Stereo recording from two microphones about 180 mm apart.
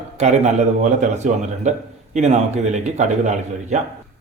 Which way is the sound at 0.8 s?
40° right (ahead or behind).